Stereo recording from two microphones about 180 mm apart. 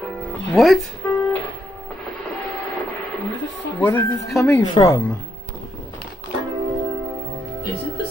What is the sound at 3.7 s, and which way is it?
Speech, 10° left (ahead or behind).